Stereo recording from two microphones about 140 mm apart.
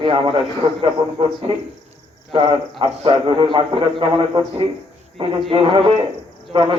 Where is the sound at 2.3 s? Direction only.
35° right (ahead or behind).